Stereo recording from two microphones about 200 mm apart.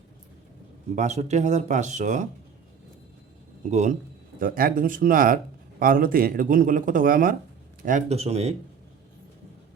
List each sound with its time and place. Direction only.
0.9 s speech: 35° right (ahead or behind)
3.6 s speech: 35° right (ahead or behind)